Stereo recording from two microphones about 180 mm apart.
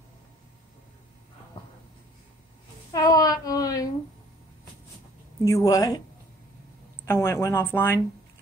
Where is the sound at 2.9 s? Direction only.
20° left (ahead or behind).